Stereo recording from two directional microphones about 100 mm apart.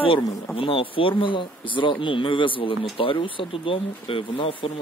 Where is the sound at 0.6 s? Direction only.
65° left (ahead or behind).